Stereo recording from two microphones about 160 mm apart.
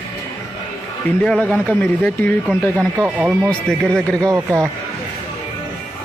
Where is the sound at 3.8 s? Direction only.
5° left (ahead or behind).